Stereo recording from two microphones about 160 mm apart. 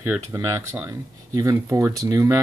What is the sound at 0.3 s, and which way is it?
Speech, 15° right (ahead or behind).